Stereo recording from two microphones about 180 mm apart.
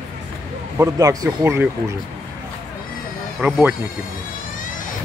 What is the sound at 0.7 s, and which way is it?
Speech, 15° right (ahead or behind).